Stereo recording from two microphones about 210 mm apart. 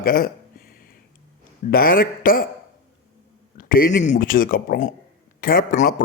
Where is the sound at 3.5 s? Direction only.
45° left (ahead or behind).